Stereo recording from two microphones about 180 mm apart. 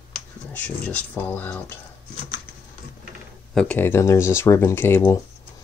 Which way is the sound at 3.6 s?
10° left (ahead or behind).